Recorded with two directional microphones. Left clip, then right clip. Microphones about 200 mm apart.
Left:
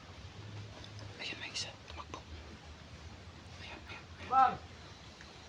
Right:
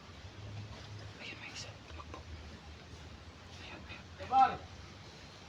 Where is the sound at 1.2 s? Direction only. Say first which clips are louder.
Left 6 dB; 55° left (ahead or behind).